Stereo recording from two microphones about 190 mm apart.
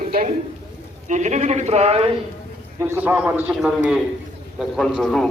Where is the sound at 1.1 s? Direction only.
40° right (ahead or behind).